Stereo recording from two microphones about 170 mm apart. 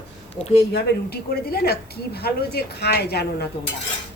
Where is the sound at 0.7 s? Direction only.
70° left (ahead or behind).